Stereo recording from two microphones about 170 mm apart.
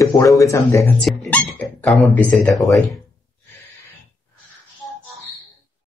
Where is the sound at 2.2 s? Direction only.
5° left (ahead or behind).